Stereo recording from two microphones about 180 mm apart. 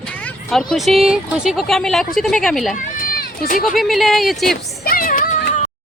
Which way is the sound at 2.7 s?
50° left (ahead or behind).